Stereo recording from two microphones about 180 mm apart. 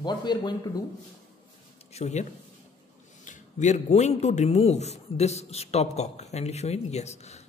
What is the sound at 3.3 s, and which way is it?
A man's voice, 40° left (ahead or behind).